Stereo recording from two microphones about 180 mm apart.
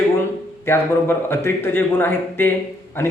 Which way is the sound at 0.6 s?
15° left (ahead or behind).